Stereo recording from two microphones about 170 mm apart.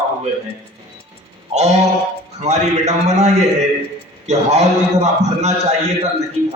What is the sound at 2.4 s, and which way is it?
Mantra, 40° right (ahead or behind).